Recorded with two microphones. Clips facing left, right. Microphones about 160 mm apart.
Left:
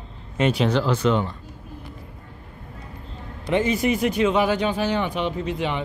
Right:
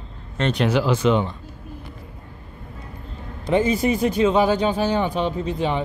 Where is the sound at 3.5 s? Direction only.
30° right (ahead or behind).